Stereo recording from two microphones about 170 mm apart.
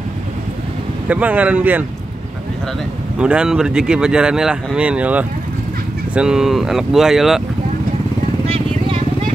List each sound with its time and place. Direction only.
1.0 s speech: 10° right (ahead or behind)
3.2 s speech: 5° right (ahead or behind)
8.5 s vehicle: 35° right (ahead or behind)